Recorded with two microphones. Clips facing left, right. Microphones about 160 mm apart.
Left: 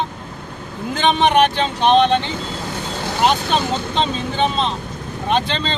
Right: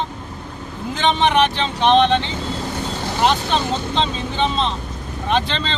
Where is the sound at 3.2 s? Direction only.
5° left (ahead or behind).